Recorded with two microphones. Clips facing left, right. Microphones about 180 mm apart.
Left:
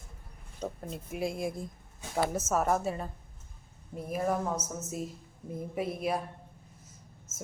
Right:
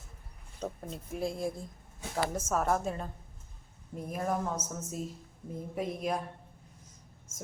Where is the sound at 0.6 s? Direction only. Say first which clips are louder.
Left 1 dB; centre (ahead or behind).